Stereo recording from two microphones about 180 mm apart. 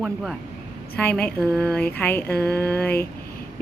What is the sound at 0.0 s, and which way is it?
A woman's voice, centre (ahead or behind).